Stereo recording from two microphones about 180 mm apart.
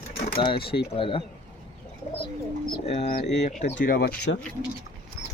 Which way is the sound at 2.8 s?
35° left (ahead or behind).